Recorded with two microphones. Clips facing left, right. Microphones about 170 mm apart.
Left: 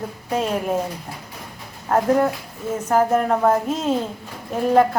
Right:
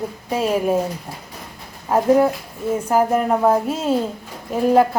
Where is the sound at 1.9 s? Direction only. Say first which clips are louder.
Right 3 dB; 10° right (ahead or behind).